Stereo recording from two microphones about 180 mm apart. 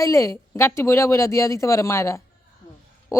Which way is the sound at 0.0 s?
15° left (ahead or behind).